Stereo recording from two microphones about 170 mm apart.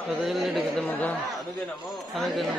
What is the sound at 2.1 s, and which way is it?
Speech, centre (ahead or behind).